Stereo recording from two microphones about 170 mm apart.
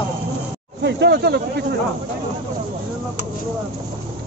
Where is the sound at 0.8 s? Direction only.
85° right.